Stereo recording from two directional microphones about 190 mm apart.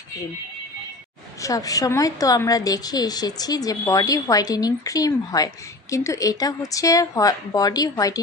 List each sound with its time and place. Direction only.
1.4 s a woman's voice: 15° left (ahead or behind)